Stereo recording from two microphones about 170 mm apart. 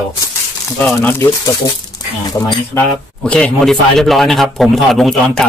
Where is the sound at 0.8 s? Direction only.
10° left (ahead or behind).